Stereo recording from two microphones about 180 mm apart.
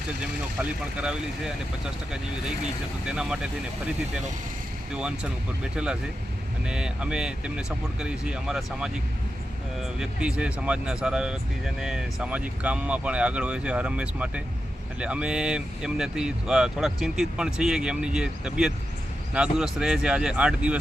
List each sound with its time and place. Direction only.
0.9 s speech: 5° right (ahead or behind)
3.1 s speech: 5° right (ahead or behind)
4.9 s speech: 5° right (ahead or behind)
10.0 s speech: 5° right (ahead or behind)